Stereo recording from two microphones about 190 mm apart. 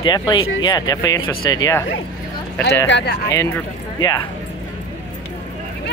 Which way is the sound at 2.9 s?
65° left (ahead or behind).